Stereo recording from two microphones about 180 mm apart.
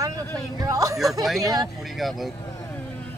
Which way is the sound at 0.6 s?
20° right (ahead or behind).